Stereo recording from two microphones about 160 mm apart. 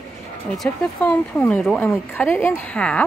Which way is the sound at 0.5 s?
5° left (ahead or behind).